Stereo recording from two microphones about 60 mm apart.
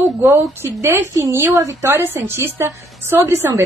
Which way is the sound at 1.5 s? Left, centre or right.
Right.